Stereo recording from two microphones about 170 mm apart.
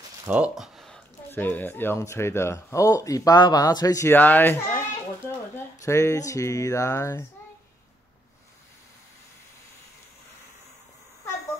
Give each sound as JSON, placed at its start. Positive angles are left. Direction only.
{"t": 0.3, "sound": "speech", "side_deg": -5}